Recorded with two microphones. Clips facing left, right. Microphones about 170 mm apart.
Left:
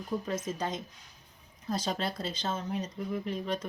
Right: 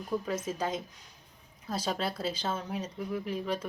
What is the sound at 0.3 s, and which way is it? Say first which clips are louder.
Speech: right 1 dB; 10° right (ahead or behind).